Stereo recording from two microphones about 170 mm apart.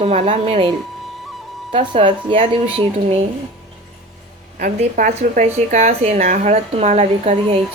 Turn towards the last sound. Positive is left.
turn(degrees=-40)  # may be behind; listen again after turning